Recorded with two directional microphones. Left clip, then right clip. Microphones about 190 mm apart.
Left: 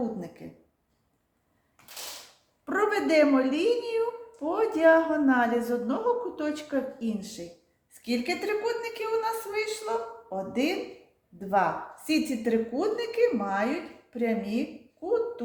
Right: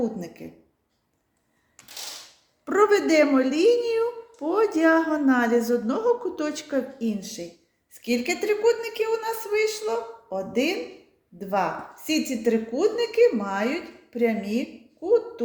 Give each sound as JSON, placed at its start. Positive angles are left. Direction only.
{"t": 2.6, "sound": "a woman's voice", "side_deg": -50}